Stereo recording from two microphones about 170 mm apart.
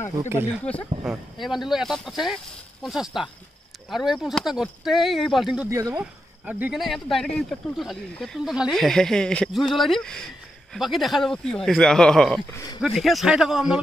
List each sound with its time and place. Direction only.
0.2 s speech: 15° right (ahead or behind)
1.0 s speech: 5° right (ahead or behind)
5.7 s speech: 20° right (ahead or behind)
5.9 s speech: 5° right (ahead or behind)
12.5 s speech: 20° left (ahead or behind)
12.8 s speech: centre (ahead or behind)